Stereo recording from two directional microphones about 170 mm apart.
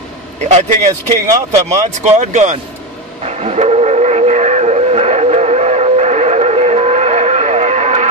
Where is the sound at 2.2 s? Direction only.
45° right (ahead or behind).